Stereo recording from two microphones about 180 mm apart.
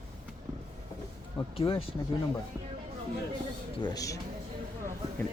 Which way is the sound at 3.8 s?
20° left (ahead or behind).